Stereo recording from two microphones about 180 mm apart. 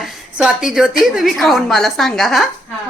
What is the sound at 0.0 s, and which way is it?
A woman's voice, 5° right (ahead or behind).